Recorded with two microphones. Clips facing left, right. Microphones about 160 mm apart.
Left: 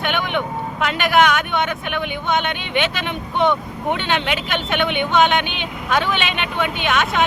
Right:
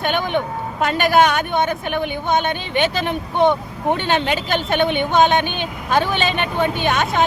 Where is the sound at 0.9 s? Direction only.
40° right (ahead or behind).